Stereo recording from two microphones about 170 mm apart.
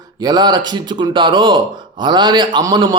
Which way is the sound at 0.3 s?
25° right (ahead or behind).